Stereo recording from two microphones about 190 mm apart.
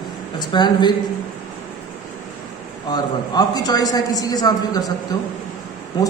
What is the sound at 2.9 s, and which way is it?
A woman's voice, 20° left (ahead or behind).